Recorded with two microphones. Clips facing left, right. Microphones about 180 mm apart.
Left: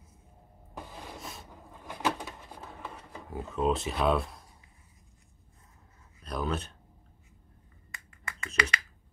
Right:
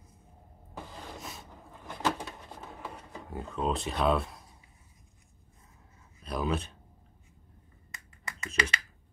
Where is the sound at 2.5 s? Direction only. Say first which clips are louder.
Right 1 dB; 10° right (ahead or behind).